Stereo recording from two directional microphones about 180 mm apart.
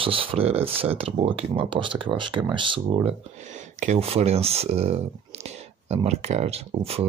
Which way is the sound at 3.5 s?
40° right (ahead or behind).